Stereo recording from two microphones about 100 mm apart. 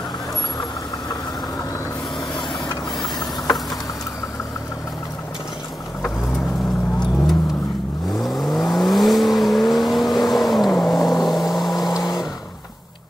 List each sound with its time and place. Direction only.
8.2 s vehicle: centre (ahead or behind)
11.9 s vehicle: 40° left (ahead or behind)